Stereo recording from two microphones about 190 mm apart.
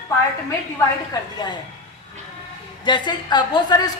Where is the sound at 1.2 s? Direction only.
20° left (ahead or behind).